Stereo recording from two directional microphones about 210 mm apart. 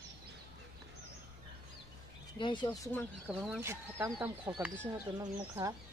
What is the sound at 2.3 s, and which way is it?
Speech, 20° left (ahead or behind).